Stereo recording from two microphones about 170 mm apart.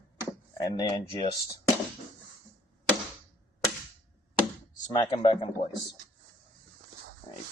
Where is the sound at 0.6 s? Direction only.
20° left (ahead or behind).